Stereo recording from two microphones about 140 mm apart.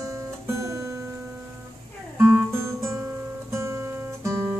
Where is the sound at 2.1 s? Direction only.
20° right (ahead or behind).